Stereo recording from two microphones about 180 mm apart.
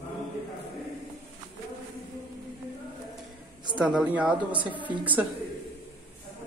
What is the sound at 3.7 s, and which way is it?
Speech, 5° right (ahead or behind).